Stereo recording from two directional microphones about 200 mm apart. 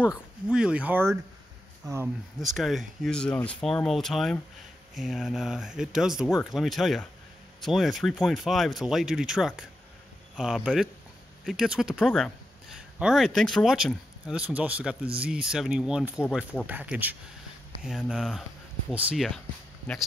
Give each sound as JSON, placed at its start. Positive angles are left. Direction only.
{"t": 0.1, "sound": "speech", "side_deg": -5}
{"t": 2.4, "sound": "speech", "side_deg": 0}